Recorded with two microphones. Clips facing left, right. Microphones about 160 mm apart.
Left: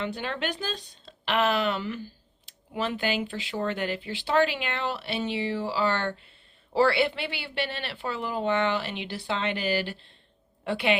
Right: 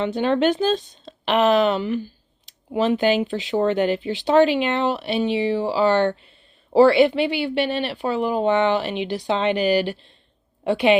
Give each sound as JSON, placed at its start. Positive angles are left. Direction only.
{"t": 0.0, "sound": "a woman's voice", "side_deg": -25}